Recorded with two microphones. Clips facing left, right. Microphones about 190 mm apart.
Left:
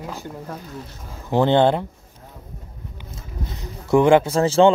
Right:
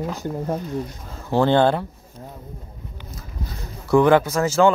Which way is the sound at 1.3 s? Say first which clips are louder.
Left 1 dB; 20° left (ahead or behind).